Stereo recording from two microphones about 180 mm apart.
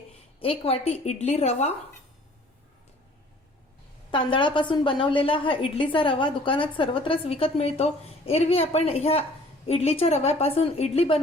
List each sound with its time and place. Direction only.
0.3 s a woman's voice: 30° left (ahead or behind)
4.1 s a woman's voice: 25° left (ahead or behind)